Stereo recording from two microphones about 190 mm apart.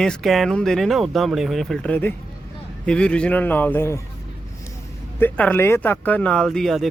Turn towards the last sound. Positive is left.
turn(degrees=0)  # may be behind; listen again after turning